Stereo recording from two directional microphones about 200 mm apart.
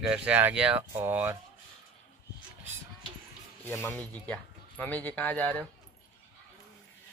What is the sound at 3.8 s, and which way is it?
Speech, 5° left (ahead or behind).